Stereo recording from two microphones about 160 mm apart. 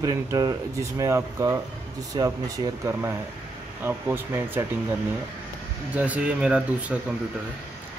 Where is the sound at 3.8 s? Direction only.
15° right (ahead or behind).